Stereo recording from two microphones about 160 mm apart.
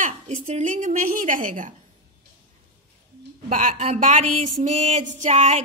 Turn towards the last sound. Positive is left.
turn(degrees=-45)  # may be behind; listen again after turning